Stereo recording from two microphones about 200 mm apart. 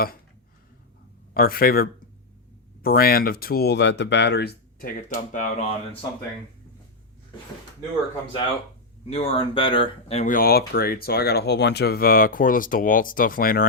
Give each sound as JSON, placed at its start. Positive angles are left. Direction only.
{"t": 1.3, "sound": "speech", "side_deg": 50}
{"t": 4.9, "sound": "speech", "side_deg": 40}
{"t": 9.0, "sound": "speech", "side_deg": 30}